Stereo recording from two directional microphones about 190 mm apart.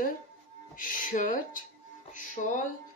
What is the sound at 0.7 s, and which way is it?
Speech, 45° left (ahead or behind).